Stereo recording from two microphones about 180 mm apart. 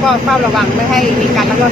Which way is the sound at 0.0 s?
Centre (ahead or behind).